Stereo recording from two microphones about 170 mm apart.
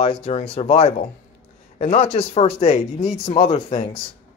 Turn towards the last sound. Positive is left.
turn(degrees=40)  # may be behind; listen again after turning